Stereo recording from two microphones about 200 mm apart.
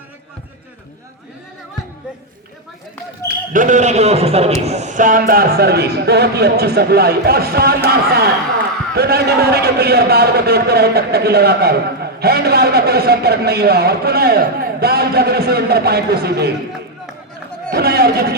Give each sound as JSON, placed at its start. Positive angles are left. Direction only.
{"t": 3.5, "sound": "a man's voice", "side_deg": -40}
{"t": 17.7, "sound": "speech", "side_deg": -50}